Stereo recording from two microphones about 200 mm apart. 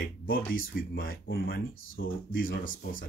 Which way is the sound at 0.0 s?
45° left (ahead or behind).